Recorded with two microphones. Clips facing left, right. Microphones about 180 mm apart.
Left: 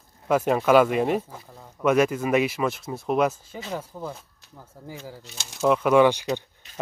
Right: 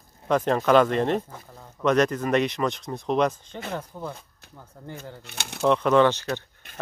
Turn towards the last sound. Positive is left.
turn(degrees=10)  # may be behind; listen again after turning